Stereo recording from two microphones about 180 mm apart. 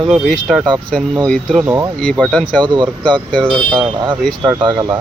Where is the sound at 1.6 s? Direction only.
15° right (ahead or behind).